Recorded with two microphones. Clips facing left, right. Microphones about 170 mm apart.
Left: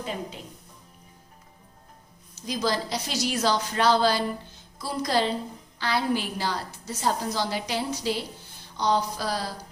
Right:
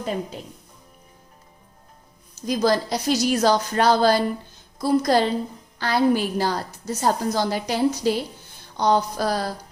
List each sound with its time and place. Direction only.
2.5 s a woman's voice: 50° right (ahead or behind)